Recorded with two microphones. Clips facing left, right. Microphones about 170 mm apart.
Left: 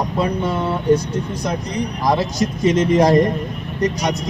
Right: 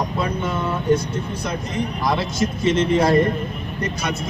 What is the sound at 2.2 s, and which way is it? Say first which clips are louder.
Speech: left 2 dB; 40° left (ahead or behind).